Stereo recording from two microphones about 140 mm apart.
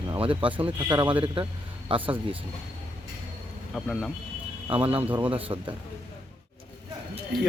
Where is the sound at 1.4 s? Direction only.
40° right (ahead or behind).